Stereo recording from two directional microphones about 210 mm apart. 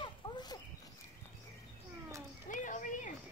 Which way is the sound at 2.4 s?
35° left (ahead or behind).